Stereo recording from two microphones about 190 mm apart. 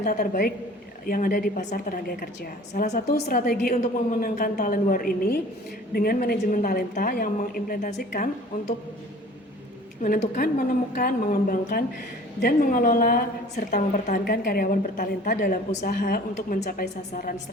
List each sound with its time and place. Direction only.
0.0 s a woman's voice: 45° left (ahead or behind)
3.2 s a woman's voice: 50° left (ahead or behind)
10.0 s a woman's voice: 45° left (ahead or behind)